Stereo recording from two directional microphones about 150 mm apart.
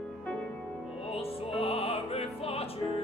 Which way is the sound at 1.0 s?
40° left (ahead or behind).